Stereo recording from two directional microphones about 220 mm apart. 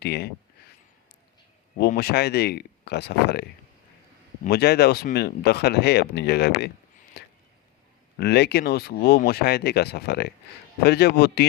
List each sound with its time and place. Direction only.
0.0 s speech: 45° left (ahead or behind)
1.8 s speech: 45° left (ahead or behind)
4.4 s speech: 45° left (ahead or behind)
7.2 s a sound: 50° left (ahead or behind)
8.2 s speech: 50° left (ahead or behind)